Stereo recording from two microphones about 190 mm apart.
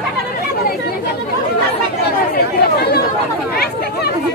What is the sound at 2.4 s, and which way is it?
Chatter, 55° left (ahead or behind).